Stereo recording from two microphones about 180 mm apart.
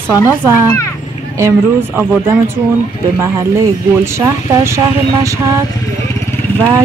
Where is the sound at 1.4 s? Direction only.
15° right (ahead or behind).